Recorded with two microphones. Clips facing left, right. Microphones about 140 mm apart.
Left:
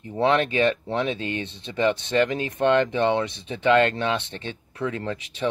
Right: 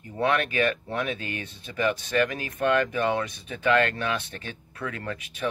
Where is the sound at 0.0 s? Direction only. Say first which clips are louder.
Left 4 dB; 25° left (ahead or behind).